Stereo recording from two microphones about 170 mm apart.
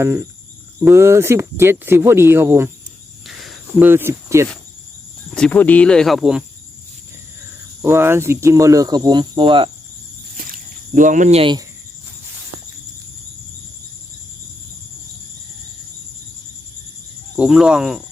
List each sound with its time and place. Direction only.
0.0 s speech: 20° right (ahead or behind)
3.2 s cricket: centre (ahead or behind)
3.8 s speech: 15° right (ahead or behind)
5.3 s speech: 10° left (ahead or behind)
7.8 s speech: 15° right (ahead or behind); by 9.6 s 30° right (ahead or behind)
10.3 s a sound: 55° right (ahead or behind); by 11.5 s 35° right (ahead or behind)
17.3 s speech: 5° right (ahead or behind)